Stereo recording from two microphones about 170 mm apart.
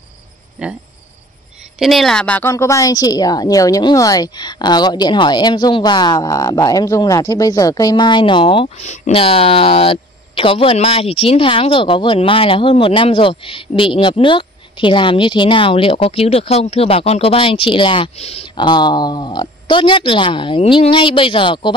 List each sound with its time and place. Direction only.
0.6 s a woman's voice: 5° right (ahead or behind)
1.8 s a woman's voice: centre (ahead or behind)
2.5 s a woman's voice: 20° left (ahead or behind)